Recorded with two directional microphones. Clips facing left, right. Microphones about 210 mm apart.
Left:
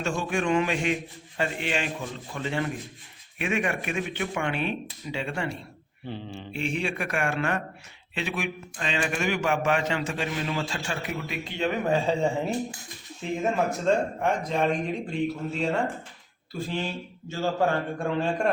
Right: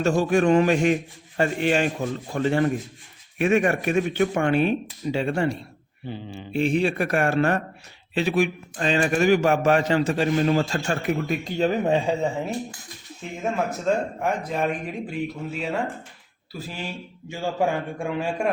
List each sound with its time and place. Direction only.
0.2 s a man's voice: 40° right (ahead or behind)
6.1 s speech: 5° right (ahead or behind)
6.5 s a man's voice: 35° right (ahead or behind)
12.0 s a man's voice: 5° right (ahead or behind)